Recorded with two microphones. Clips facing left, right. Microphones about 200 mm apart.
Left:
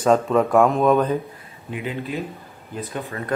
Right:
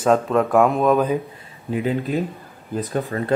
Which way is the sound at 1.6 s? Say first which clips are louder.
Right 6 dB; 35° right (ahead or behind).